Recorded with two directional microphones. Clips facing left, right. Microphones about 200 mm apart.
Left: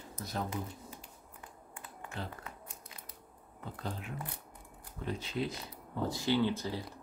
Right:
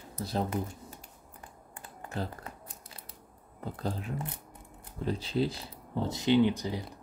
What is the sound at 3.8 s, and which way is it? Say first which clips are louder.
Speech: right 6 dB; 35° right (ahead or behind).